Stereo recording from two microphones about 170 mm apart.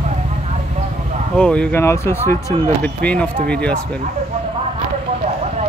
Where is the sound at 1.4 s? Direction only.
5° left (ahead or behind).